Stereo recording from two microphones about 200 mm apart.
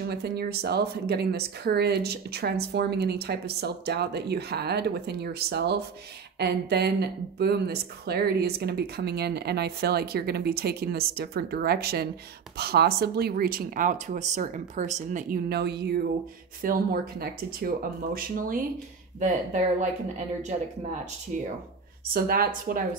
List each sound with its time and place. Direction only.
0.1 s speech: 55° right (ahead or behind); by 19.9 s 35° right (ahead or behind)
22.1 s speech: 45° right (ahead or behind)